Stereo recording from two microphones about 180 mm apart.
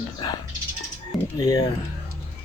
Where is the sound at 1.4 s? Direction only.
20° left (ahead or behind).